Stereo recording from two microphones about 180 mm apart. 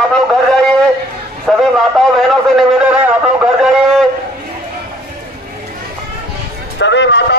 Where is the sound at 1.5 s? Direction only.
Centre (ahead or behind).